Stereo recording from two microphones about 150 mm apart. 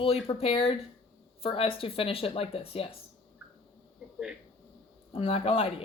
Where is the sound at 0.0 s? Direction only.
40° left (ahead or behind).